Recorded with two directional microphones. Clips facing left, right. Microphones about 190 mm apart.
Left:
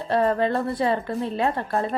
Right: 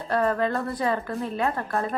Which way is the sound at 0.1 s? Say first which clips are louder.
Left 3 dB; 30° left (ahead or behind).